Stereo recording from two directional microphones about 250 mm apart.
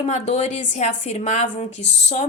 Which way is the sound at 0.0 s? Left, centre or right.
Left.